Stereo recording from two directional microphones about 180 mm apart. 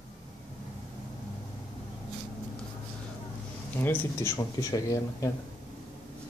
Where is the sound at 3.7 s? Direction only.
15° left (ahead or behind).